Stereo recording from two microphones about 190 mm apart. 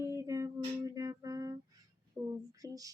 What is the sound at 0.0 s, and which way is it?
Humming, 15° right (ahead or behind).